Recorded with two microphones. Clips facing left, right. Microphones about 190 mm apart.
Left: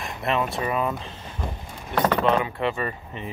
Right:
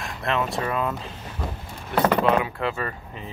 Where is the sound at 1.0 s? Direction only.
10° right (ahead or behind).